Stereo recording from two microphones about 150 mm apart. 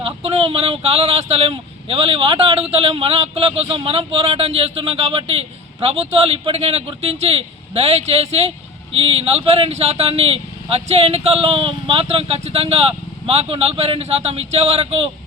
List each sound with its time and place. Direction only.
0.0 s speech: 40° right (ahead or behind)